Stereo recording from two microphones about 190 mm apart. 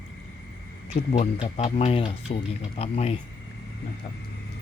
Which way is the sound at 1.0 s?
30° left (ahead or behind).